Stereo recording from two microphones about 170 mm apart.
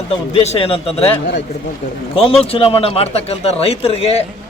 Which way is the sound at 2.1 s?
35° left (ahead or behind).